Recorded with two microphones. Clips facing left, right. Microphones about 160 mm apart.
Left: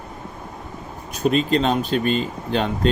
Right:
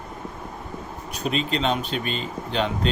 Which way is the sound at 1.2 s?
45° left (ahead or behind).